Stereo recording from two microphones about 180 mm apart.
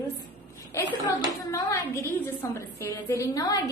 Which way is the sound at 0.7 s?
15° left (ahead or behind).